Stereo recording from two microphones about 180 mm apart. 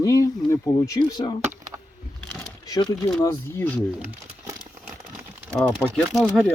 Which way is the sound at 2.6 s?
20° left (ahead or behind).